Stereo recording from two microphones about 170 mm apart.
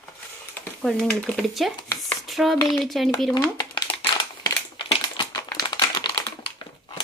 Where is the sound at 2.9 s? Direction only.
Centre (ahead or behind).